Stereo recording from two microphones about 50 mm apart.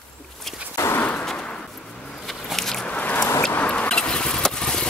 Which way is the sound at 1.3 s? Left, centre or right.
Centre.